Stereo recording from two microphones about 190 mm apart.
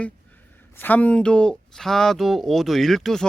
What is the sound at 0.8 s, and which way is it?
Speech, 10° left (ahead or behind).